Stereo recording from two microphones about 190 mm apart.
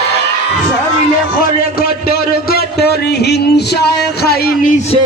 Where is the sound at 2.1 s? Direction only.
55° left (ahead or behind).